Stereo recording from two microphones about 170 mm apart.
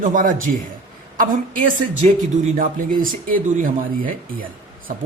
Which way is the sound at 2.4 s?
55° right (ahead or behind).